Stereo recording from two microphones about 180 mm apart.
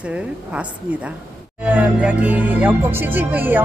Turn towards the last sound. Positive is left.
turn(degrees=-10)  # may be behind; listen again after turning